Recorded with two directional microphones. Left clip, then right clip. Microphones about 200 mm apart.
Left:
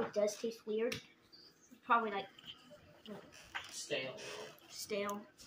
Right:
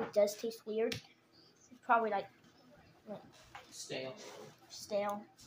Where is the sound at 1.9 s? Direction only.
60° right (ahead or behind).